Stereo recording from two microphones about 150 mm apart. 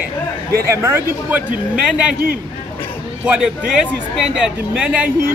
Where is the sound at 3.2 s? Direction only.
5° right (ahead or behind).